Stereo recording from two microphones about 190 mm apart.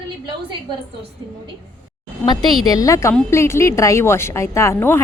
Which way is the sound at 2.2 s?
20° left (ahead or behind).